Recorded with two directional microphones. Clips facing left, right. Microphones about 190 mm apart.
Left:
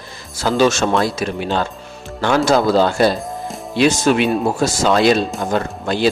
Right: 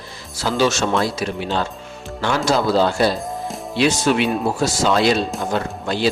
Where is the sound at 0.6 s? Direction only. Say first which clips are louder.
Left 3 dB; 50° left (ahead or behind).